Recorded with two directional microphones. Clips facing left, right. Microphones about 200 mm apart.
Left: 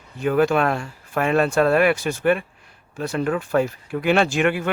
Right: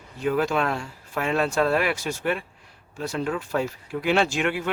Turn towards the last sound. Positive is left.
turn(degrees=55)  # may be behind; listen again after turning